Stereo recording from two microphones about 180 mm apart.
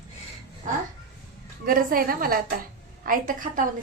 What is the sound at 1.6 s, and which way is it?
A woman's voice, 50° right (ahead or behind).